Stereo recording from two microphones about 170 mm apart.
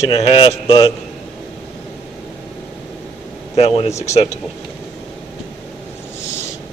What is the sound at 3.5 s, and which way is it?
Speech, 35° left (ahead or behind).